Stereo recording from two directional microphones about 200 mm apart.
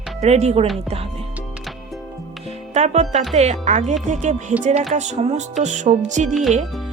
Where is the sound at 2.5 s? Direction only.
35° right (ahead or behind).